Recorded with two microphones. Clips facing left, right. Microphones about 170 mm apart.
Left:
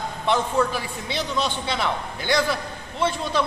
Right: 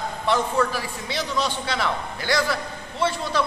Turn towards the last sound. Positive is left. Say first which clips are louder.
# even
turn(degrees=20)  # may be behind; listen again after turning